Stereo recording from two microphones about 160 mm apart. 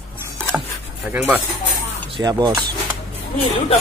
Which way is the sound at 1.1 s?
10° right (ahead or behind).